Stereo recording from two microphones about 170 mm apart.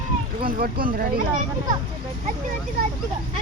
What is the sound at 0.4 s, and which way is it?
Speech, 60° right (ahead or behind).